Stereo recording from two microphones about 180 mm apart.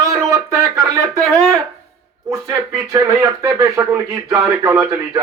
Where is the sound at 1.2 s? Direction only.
Centre (ahead or behind).